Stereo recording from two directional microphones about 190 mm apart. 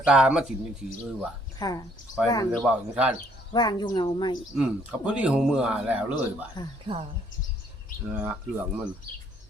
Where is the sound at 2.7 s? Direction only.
5° right (ahead or behind).